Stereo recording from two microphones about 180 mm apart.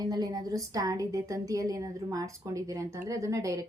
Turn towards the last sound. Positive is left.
turn(degrees=-15)  # may be behind; listen again after turning